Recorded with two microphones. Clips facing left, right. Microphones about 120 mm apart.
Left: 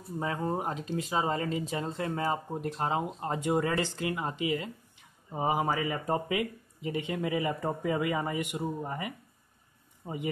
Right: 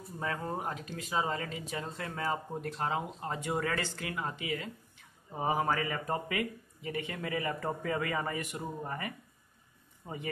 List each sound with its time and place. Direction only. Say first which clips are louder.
0.2 s speech: left 4 dB; 20° left (ahead or behind)